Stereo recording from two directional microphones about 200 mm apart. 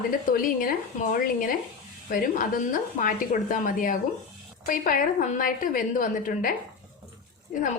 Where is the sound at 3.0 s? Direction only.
45° left (ahead or behind).